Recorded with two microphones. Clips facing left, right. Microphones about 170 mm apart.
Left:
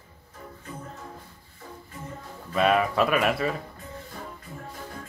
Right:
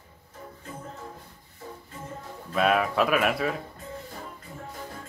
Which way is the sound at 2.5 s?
Centre (ahead or behind).